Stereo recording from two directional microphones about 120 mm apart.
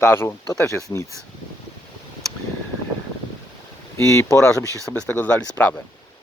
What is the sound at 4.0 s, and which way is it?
Speech, 25° left (ahead or behind).